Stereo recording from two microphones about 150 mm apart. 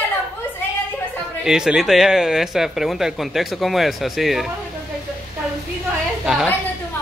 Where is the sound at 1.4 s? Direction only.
5° right (ahead or behind).